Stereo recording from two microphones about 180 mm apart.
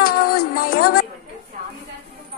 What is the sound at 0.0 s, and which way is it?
Music, 55° left (ahead or behind).